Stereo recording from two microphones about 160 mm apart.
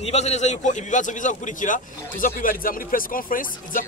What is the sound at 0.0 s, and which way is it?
A man's voice, 45° left (ahead or behind).